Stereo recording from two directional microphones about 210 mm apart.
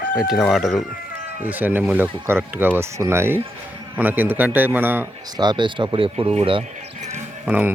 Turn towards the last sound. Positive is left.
turn(degrees=-10)  # may be behind; listen again after turning